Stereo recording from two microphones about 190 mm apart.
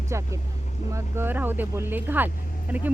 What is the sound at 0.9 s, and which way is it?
Speech, 10° right (ahead or behind).